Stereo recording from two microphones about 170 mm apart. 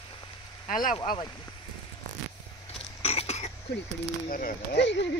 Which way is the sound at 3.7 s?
75° left (ahead or behind).